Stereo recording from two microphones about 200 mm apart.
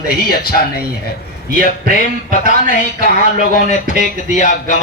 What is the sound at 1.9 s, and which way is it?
Speech, 40° left (ahead or behind).